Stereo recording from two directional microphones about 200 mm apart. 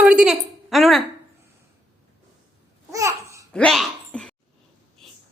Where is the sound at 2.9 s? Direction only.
15° right (ahead or behind).